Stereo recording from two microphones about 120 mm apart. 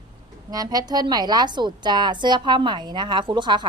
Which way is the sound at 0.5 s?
30° right (ahead or behind).